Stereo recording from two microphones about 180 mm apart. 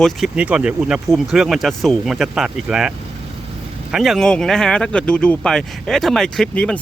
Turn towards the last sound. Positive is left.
turn(degrees=5)  # may be behind; listen again after turning